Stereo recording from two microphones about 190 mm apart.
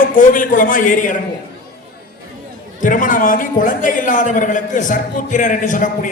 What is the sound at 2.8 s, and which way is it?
A man's voice, 45° left (ahead or behind).